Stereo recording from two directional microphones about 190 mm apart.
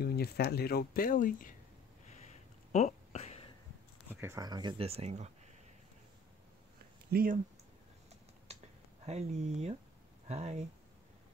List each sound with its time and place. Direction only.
0.0 s speech: 55° left (ahead or behind)
2.0 s a sound: 35° left (ahead or behind)
4.1 s speech: 15° right (ahead or behind); by 5.3 s 35° right (ahead or behind)
7.1 s speech: 55° right (ahead or behind)
8.5 s a sound: 35° right (ahead or behind)
9.0 s speech: 35° right (ahead or behind)